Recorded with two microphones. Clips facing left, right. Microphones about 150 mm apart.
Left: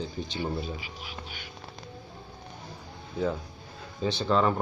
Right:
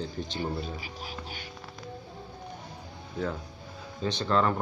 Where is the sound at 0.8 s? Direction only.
40° right (ahead or behind).